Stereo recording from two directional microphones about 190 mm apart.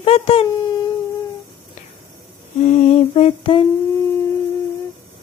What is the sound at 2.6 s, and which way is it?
Lullaby, 40° left (ahead or behind).